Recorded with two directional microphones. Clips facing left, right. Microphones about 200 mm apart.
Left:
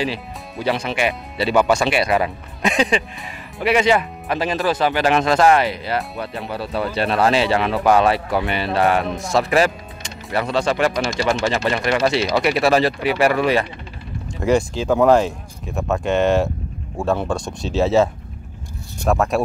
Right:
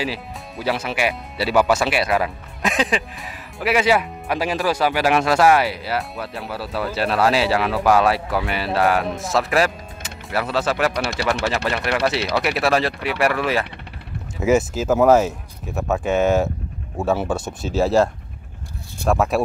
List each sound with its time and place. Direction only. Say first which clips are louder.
0.0 s speech: left 2 dB; 5° right (ahead or behind)
10.9 s speech: left 2 dB; 65° right (ahead or behind)
11.4 s speech: left 3 dB; centre (ahead or behind)